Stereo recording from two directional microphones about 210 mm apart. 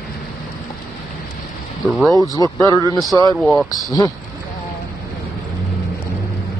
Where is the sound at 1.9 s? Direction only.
Centre (ahead or behind).